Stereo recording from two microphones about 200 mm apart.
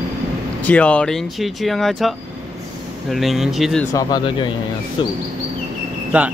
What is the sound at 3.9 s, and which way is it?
Speech, 20° left (ahead or behind).